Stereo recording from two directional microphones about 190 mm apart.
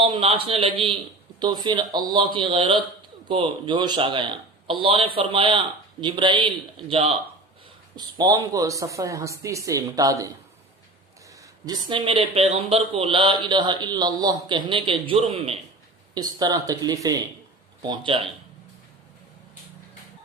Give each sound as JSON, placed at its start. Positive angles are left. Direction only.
{"t": 0.0, "sound": "speech", "side_deg": -25}
{"t": 11.9, "sound": "speech", "side_deg": -25}
{"t": 16.1, "sound": "speech", "side_deg": -20}